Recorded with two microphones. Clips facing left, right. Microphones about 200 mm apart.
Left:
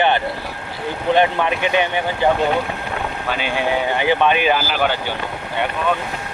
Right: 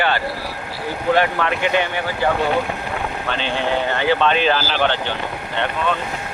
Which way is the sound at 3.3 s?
10° left (ahead or behind).